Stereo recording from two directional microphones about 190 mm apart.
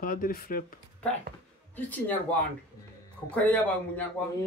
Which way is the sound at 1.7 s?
10° left (ahead or behind).